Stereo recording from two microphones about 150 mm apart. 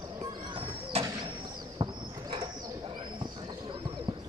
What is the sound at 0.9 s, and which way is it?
Bird, 40° right (ahead or behind).